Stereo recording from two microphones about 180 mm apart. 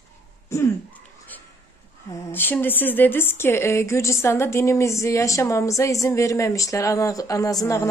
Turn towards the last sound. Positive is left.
turn(degrees=20)  # may be behind; listen again after turning